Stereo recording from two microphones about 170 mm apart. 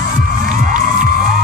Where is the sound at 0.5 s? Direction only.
50° right (ahead or behind).